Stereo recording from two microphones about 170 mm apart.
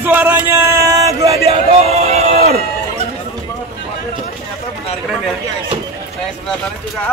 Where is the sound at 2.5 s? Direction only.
40° right (ahead or behind).